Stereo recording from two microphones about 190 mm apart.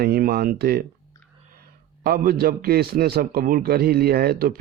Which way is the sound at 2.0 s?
50° right (ahead or behind).